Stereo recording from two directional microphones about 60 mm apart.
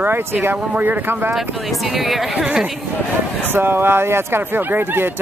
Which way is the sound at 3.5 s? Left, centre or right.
Right.